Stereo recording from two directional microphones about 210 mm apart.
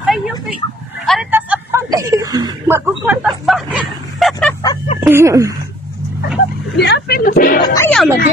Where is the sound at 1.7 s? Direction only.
15° right (ahead or behind); by 4.6 s centre (ahead or behind).